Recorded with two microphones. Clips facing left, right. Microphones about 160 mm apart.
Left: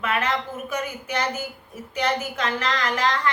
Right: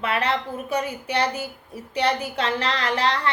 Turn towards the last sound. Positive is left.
turn(degrees=-30)  # may be behind; listen again after turning